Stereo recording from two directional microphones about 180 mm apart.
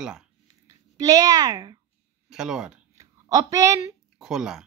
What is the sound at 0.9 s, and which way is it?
Speech, 20° right (ahead or behind).